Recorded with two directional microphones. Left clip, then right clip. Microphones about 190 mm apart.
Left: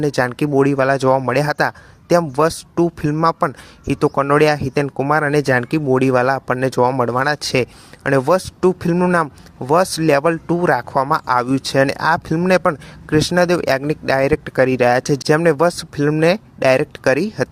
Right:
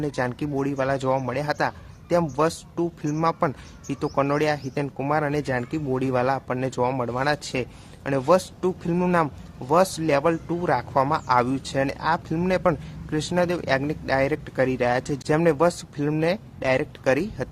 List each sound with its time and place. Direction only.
0.0 s speech: 40° left (ahead or behind)